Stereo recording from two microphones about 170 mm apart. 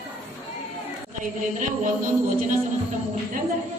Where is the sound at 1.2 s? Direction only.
50° right (ahead or behind).